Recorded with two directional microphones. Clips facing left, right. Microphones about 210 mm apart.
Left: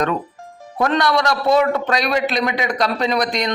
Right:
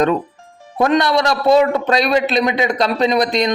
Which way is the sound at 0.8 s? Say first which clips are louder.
Right 3 dB; 25° right (ahead or behind).